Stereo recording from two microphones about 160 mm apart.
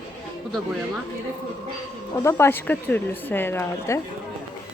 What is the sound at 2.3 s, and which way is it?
Speech, 15° left (ahead or behind).